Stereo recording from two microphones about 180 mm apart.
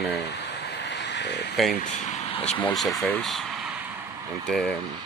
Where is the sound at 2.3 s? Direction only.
35° left (ahead or behind).